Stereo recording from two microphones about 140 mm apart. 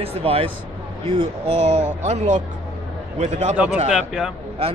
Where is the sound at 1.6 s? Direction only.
55° right (ahead or behind).